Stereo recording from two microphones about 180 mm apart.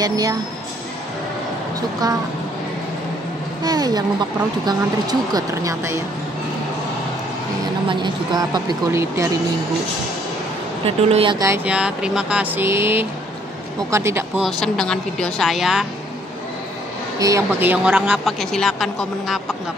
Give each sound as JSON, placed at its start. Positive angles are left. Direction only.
{"t": 0.0, "sound": "a woman's voice", "side_deg": -20}
{"t": 3.6, "sound": "a woman's voice", "side_deg": -20}
{"t": 7.9, "sound": "a woman's voice", "side_deg": -25}
{"t": 11.1, "sound": "speech", "side_deg": -30}
{"t": 11.3, "sound": "a sound", "side_deg": -15}
{"t": 14.4, "sound": "a woman's voice", "side_deg": 5}
{"t": 17.2, "sound": "a woman's voice", "side_deg": -15}